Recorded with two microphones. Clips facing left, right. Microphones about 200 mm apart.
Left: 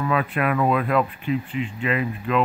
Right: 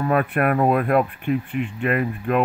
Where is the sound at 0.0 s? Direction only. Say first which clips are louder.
Right 3 dB; 50° right (ahead or behind).